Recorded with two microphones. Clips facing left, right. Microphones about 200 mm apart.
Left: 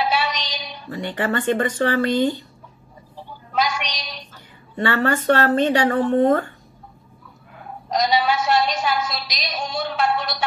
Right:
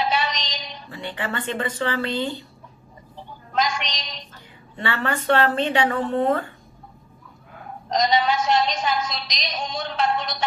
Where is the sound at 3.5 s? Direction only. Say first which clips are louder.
Left 1 dB; 5° left (ahead or behind).